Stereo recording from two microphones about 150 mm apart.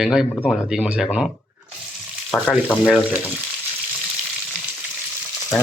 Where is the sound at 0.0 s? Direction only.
5° right (ahead or behind).